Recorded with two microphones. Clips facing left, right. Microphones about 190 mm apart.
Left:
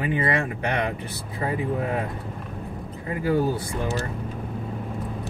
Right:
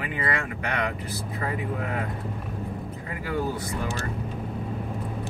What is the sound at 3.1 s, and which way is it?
Speech, 30° left (ahead or behind).